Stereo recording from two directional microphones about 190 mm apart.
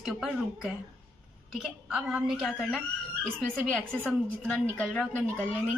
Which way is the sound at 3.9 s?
5° left (ahead or behind).